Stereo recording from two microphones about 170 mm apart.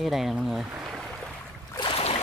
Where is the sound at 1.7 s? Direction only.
30° left (ahead or behind).